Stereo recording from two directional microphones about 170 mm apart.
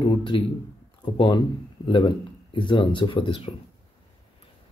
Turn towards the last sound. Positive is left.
turn(degrees=30)  # may be behind; listen again after turning